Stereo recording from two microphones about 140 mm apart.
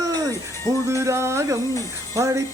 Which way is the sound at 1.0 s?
20° right (ahead or behind).